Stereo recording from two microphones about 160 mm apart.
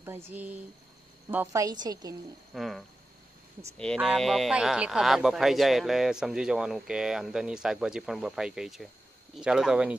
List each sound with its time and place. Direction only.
0.0 s a woman's voice: 15° right (ahead or behind)
2.5 s speech: centre (ahead or behind)